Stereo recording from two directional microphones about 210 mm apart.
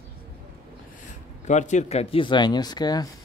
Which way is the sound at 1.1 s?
35° left (ahead or behind).